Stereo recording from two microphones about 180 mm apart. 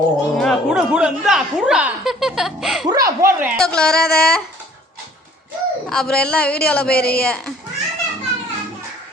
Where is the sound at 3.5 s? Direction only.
5° left (ahead or behind).